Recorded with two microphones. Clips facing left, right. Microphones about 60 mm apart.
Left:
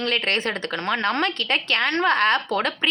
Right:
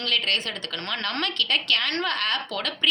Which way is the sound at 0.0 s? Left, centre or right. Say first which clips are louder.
Left 3 dB; left.